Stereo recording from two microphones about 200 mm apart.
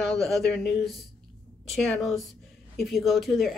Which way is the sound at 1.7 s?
Centre (ahead or behind).